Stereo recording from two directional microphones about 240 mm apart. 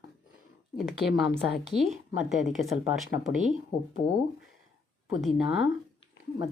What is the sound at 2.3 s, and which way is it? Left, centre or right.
Speech, centre.